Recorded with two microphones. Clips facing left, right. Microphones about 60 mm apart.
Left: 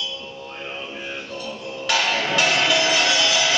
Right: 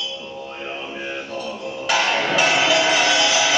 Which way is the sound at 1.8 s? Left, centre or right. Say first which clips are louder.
Right 2 dB; centre.